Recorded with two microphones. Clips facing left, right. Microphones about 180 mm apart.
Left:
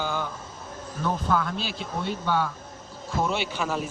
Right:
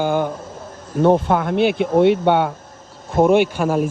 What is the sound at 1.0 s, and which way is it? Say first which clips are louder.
Speech: right 11 dB; 65° right (ahead or behind).